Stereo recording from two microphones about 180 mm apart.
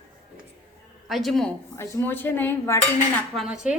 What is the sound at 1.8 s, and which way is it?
Speech, 10° left (ahead or behind).